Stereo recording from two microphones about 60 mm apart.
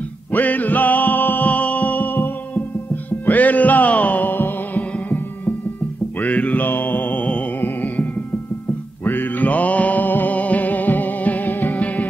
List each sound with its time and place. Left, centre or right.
0.3 s music: left
6.2 s mantra: left
7.6 s music: left